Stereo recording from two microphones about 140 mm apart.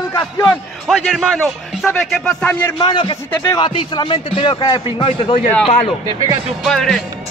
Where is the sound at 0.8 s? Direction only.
5° right (ahead or behind).